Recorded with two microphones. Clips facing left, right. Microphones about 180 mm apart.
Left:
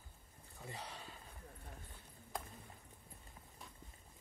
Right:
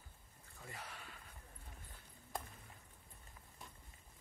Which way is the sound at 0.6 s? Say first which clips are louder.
Left 3 dB; 20° left (ahead or behind).